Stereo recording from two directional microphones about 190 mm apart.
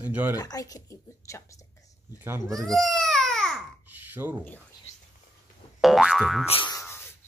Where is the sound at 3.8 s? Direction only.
10° right (ahead or behind).